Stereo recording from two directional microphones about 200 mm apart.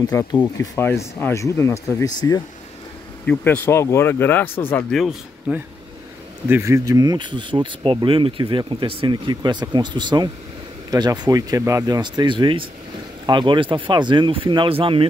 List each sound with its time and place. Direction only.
0.0 s speech: 15° left (ahead or behind)
3.3 s speech: 10° left (ahead or behind)
6.5 s speech: 15° right (ahead or behind)